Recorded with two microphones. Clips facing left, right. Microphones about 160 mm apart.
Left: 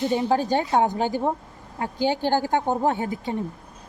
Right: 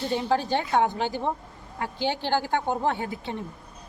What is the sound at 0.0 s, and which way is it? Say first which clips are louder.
A woman's voice: left 3 dB; 15° left (ahead or behind).